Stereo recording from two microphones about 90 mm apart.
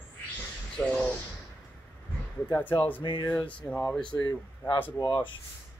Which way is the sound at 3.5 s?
15° left (ahead or behind).